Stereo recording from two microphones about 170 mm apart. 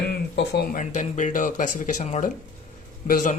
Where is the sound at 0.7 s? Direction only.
45° left (ahead or behind).